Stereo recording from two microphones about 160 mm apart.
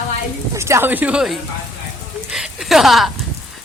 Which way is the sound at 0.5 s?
15° right (ahead or behind).